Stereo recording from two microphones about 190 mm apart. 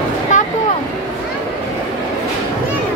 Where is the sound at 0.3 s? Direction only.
40° left (ahead or behind).